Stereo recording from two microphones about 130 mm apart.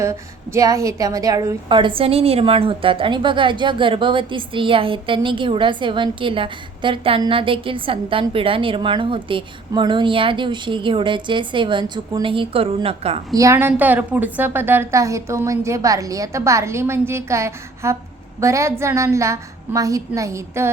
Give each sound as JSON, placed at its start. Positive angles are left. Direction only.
{"t": 0.0, "sound": "a woman's voice", "side_deg": -25}
{"t": 13.3, "sound": "a woman's voice", "side_deg": -25}